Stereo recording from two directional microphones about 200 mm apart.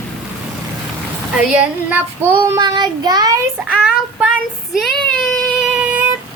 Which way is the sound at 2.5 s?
20° right (ahead or behind).